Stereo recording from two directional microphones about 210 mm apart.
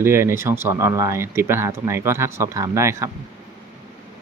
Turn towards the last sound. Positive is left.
turn(degrees=-15)  # may be behind; listen again after turning